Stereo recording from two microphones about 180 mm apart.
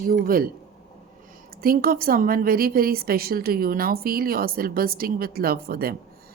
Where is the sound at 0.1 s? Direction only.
55° right (ahead or behind).